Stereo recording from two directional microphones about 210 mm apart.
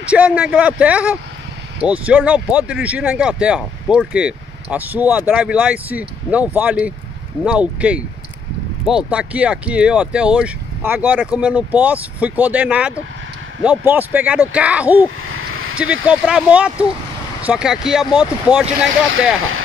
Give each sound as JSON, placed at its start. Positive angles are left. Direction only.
{"t": 0.1, "sound": "speech", "side_deg": -5}
{"t": 15.0, "sound": "a sound", "side_deg": -75}
{"t": 15.9, "sound": "speech", "side_deg": -5}